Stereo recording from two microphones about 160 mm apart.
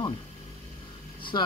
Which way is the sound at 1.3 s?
25° left (ahead or behind).